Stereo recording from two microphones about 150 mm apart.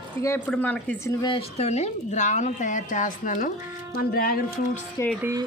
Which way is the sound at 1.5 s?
45° left (ahead or behind).